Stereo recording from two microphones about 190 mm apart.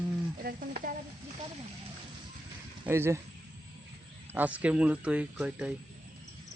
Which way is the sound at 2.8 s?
15° right (ahead or behind).